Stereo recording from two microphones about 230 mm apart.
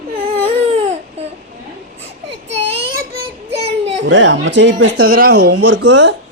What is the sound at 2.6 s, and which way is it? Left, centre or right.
Child singing, right.